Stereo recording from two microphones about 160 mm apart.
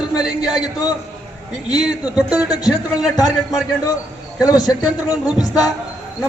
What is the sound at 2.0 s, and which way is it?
Speech, 10° right (ahead or behind).